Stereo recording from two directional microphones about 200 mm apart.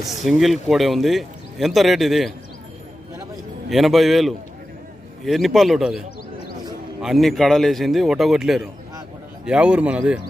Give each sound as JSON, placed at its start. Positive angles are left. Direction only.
{"t": 0.0, "sound": "speech", "side_deg": 0}
{"t": 3.7, "sound": "speech", "side_deg": 0}
{"t": 7.0, "sound": "speech", "side_deg": 0}